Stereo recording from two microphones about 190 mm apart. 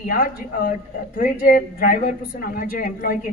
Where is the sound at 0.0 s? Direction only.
50° left (ahead or behind).